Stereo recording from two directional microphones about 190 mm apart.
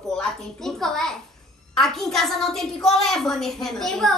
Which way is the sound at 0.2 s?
Centre (ahead or behind).